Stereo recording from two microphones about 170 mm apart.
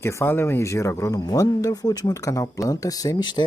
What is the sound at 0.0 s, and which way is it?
Speech, 15° left (ahead or behind).